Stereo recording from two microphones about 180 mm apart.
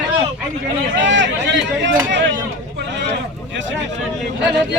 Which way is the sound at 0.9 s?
90° right.